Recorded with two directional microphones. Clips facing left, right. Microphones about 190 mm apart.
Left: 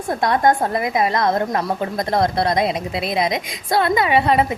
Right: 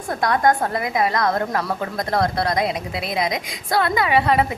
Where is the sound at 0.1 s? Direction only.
25° left (ahead or behind).